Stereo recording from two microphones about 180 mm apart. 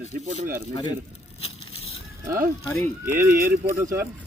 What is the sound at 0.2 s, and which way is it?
Speech, 45° right (ahead or behind).